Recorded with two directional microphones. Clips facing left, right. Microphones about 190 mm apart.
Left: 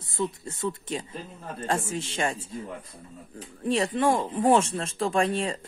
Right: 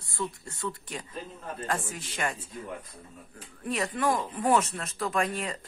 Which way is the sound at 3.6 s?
30° left (ahead or behind).